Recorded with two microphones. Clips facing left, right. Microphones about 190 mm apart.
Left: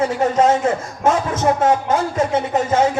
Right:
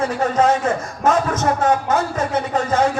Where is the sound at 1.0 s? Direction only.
25° left (ahead or behind).